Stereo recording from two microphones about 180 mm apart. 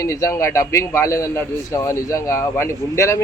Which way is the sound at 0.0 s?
15° left (ahead or behind).